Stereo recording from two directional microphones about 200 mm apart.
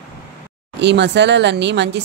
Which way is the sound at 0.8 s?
60° right (ahead or behind).